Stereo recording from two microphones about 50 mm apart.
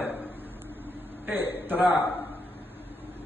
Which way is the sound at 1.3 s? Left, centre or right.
Right.